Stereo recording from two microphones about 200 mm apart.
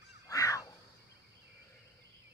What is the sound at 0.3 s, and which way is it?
Goose, 15° left (ahead or behind).